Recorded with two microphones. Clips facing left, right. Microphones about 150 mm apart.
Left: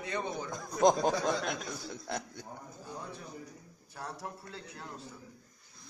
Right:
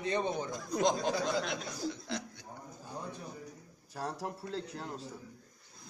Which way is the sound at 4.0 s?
35° right (ahead or behind).